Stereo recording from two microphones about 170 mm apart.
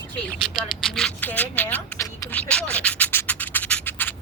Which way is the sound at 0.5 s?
5° left (ahead or behind).